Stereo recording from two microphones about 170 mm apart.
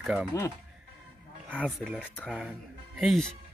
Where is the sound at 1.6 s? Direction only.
Centre (ahead or behind).